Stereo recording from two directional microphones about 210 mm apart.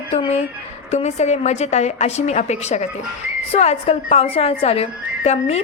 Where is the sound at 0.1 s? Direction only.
30° left (ahead or behind).